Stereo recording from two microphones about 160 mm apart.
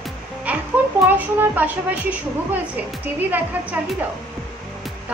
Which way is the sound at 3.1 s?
10° right (ahead or behind).